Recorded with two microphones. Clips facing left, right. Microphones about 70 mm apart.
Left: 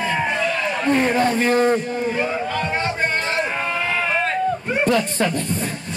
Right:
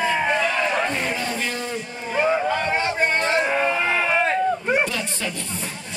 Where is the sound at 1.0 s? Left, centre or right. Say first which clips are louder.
Left 8 dB; left.